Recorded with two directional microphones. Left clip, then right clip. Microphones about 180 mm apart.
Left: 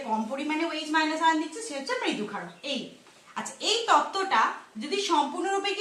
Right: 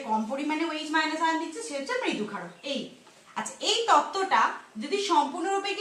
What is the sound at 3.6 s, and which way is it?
Speech, 10° right (ahead or behind).